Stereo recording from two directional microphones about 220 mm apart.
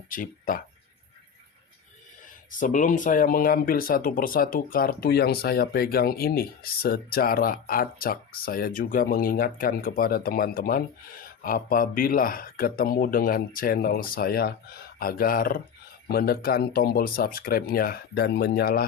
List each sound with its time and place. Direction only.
0.1 s speech: 40° left (ahead or behind)
2.6 s speech: 35° left (ahead or behind)